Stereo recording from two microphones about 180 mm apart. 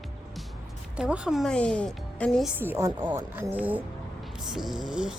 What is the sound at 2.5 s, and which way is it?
A woman's voice, 15° right (ahead or behind).